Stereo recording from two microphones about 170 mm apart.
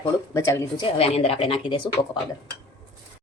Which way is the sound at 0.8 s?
35° left (ahead or behind).